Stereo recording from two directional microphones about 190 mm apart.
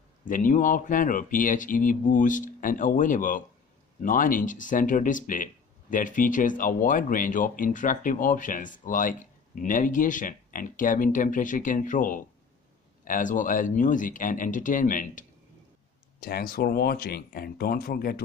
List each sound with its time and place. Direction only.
0.3 s speech: 45° left (ahead or behind)